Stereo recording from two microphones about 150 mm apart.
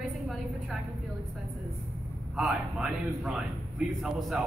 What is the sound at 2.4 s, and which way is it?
A man's voice, 5° right (ahead or behind).